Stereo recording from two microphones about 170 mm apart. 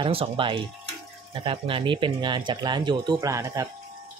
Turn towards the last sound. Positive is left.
turn(degrees=-20)  # may be behind; listen again after turning